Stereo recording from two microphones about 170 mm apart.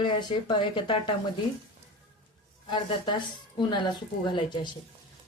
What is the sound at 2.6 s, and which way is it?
Speech, 30° left (ahead or behind).